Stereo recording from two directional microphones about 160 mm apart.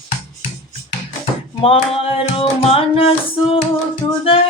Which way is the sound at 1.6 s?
35° left (ahead or behind).